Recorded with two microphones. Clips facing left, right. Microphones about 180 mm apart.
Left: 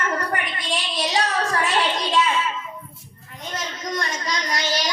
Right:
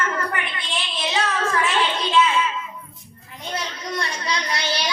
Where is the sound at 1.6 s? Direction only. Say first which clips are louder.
Even; 40° left (ahead or behind).